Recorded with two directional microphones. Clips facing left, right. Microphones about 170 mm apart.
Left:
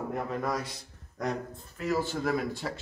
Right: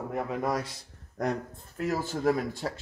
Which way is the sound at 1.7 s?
45° right (ahead or behind).